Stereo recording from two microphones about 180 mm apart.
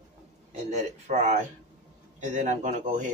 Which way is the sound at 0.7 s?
40° right (ahead or behind).